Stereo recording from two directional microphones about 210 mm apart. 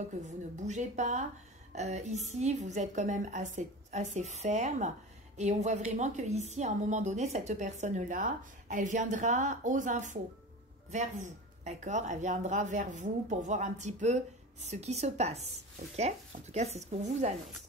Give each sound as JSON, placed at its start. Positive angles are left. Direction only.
{"t": 0.3, "sound": "a woman's voice", "side_deg": -35}